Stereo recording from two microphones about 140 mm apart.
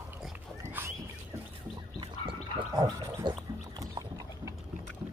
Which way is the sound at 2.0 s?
35° right (ahead or behind).